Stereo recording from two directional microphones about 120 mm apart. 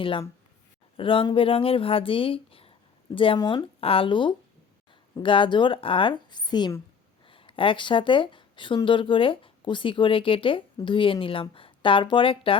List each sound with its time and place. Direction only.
0.0 s speech: 45° left (ahead or behind)
3.3 s speech: 35° left (ahead or behind)
3.8 s speech: 50° left (ahead or behind)
7.3 s speech: 45° left (ahead or behind)